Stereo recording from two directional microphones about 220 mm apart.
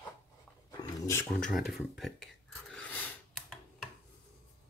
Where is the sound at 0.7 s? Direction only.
15° left (ahead or behind).